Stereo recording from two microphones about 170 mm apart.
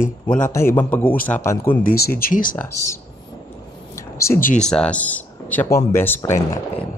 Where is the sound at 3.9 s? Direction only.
15° left (ahead or behind).